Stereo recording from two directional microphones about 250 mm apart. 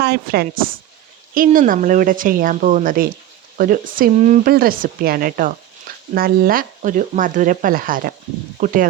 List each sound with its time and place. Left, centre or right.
0.0 s speech: right